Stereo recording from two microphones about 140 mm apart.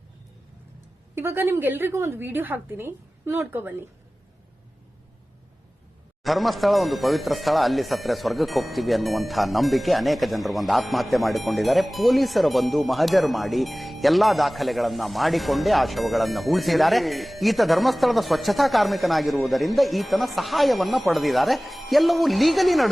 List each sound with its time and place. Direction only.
1.1 s a woman's voice: 15° right (ahead or behind)
6.2 s speech: centre (ahead or behind)